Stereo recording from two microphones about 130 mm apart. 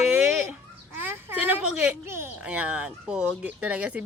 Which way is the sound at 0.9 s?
15° right (ahead or behind).